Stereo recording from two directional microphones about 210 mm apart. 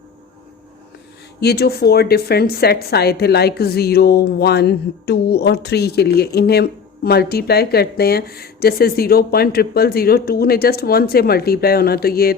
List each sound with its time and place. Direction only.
1.4 s a woman's voice: 50° left (ahead or behind)